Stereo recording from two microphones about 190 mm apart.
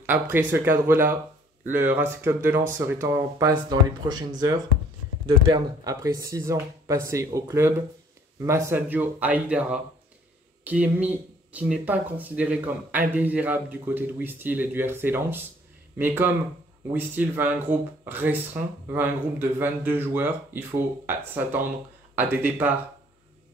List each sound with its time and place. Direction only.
0.0 s speech: 10° right (ahead or behind)